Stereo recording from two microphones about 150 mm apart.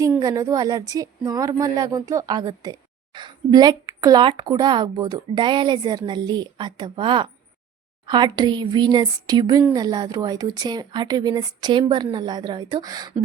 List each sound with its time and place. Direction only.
0.2 s speech: 25° right (ahead or behind)